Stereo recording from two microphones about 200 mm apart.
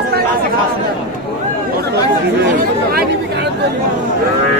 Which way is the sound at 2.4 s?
50° right (ahead or behind).